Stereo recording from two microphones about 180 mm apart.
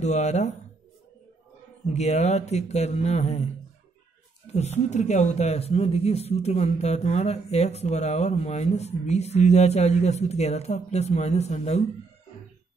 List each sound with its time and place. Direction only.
0.0 s speech: 40° left (ahead or behind)
2.0 s speech: 40° left (ahead or behind)
4.5 s speech: 40° left (ahead or behind)